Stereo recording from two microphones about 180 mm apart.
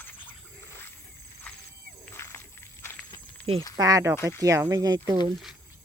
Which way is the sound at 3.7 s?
20° right (ahead or behind).